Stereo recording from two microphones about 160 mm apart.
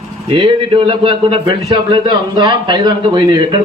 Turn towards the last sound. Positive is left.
turn(degrees=-30)  # may be behind; listen again after turning